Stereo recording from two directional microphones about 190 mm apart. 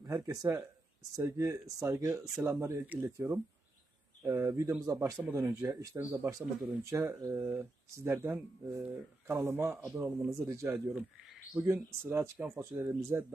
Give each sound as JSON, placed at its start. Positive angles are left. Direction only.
{"t": 0.0, "sound": "speech", "side_deg": -15}